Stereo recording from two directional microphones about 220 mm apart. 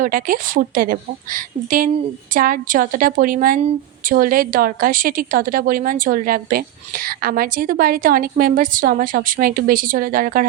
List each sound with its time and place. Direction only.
0.0 s a woman's voice: 40° right (ahead or behind)